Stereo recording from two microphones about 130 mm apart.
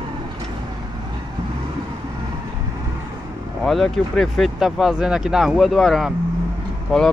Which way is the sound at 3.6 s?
Centre (ahead or behind).